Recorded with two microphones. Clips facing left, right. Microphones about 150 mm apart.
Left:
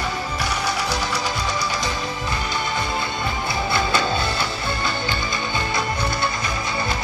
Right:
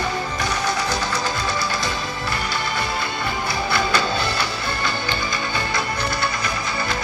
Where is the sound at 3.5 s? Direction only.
25° left (ahead or behind).